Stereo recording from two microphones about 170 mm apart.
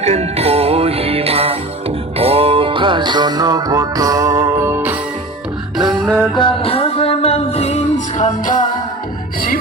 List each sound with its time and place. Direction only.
0.0 s music: 40° right (ahead or behind); by 4.9 s 10° right (ahead or behind)
5.7 s music: centre (ahead or behind)
6.3 s music: 30° left (ahead or behind); by 8.6 s 50° left (ahead or behind)